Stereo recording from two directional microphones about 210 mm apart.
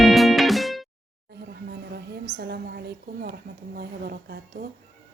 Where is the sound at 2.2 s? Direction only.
50° right (ahead or behind).